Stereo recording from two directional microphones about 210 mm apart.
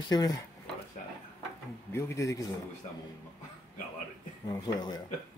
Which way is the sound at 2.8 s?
30° left (ahead or behind).